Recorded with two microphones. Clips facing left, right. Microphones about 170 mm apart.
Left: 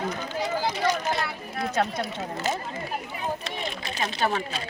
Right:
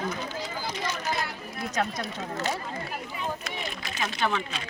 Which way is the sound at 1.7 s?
30° left (ahead or behind).